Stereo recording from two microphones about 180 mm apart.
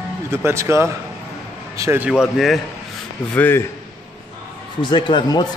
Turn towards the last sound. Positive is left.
turn(degrees=25)  # may be behind; listen again after turning